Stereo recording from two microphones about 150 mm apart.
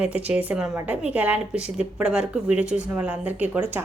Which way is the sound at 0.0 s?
10° right (ahead or behind).